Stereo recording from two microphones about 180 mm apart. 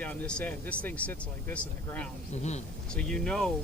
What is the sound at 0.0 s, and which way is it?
Speech, 10° left (ahead or behind).